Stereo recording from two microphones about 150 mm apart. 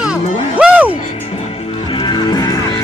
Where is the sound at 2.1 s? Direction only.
25° left (ahead or behind).